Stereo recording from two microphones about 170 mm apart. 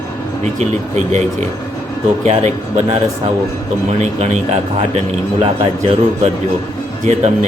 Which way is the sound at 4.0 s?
40° right (ahead or behind).